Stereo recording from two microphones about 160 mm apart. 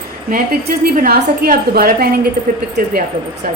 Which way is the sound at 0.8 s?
70° right (ahead or behind).